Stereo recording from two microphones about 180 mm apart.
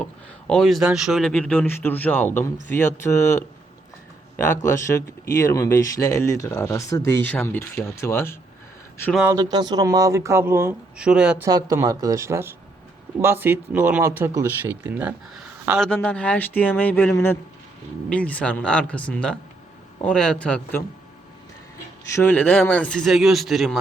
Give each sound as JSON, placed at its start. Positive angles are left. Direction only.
{"t": 0.0, "sound": "speech", "side_deg": 5}
{"t": 4.6, "sound": "speech", "side_deg": 15}
{"t": 9.2, "sound": "speech", "side_deg": -20}
{"t": 11.4, "sound": "speech", "side_deg": -20}
{"t": 15.8, "sound": "speech", "side_deg": 5}
{"t": 22.1, "sound": "speech", "side_deg": 10}